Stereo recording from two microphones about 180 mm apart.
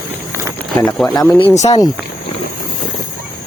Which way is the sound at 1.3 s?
35° left (ahead or behind).